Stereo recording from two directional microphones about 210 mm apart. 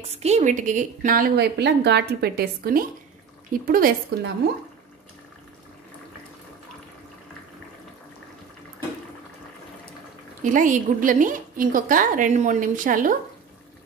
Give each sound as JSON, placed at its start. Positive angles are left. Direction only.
{"t": 0.0, "sound": "a woman's voice", "side_deg": -30}
{"t": 10.4, "sound": "a woman's voice", "side_deg": -40}